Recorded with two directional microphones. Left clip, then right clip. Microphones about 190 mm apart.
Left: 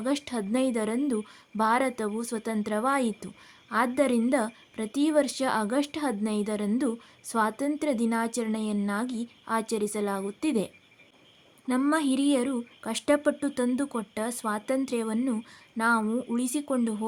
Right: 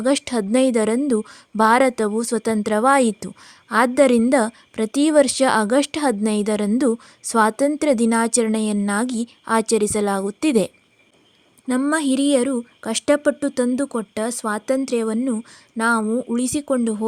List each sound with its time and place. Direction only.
0.0 s speech: 40° right (ahead or behind)
11.7 s speech: 30° right (ahead or behind)